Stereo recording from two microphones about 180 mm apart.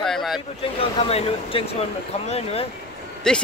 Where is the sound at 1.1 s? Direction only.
30° left (ahead or behind).